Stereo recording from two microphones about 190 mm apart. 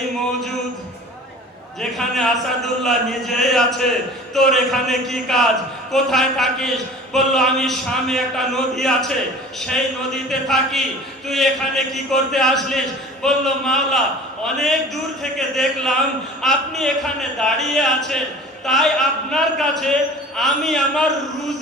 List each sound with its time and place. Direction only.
1.8 s a man's voice: centre (ahead or behind)